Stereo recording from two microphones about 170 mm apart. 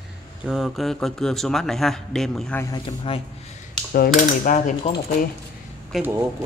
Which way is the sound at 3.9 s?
55° left (ahead or behind).